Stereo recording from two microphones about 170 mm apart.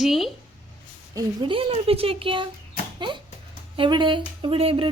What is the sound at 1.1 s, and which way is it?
Speech, 30° right (ahead or behind).